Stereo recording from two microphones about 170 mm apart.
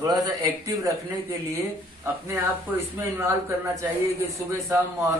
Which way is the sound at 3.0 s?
15° right (ahead or behind).